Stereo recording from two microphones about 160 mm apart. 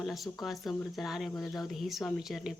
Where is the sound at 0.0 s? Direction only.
Centre (ahead or behind).